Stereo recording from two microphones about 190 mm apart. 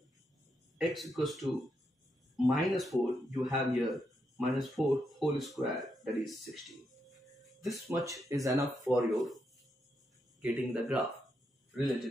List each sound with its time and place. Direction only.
0.7 s speech: centre (ahead or behind)
2.4 s speech: centre (ahead or behind)
7.9 s speech: 15° right (ahead or behind)
8.9 s speech: centre (ahead or behind)
10.4 s speech: 5° right (ahead or behind)